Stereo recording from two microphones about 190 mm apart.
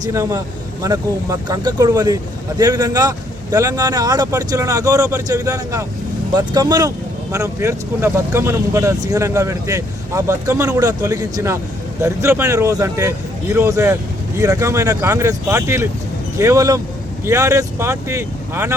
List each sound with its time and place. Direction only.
0.0 s speech: 15° right (ahead or behind)